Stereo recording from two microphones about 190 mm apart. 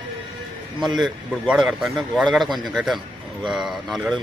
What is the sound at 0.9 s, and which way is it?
Speech, centre (ahead or behind).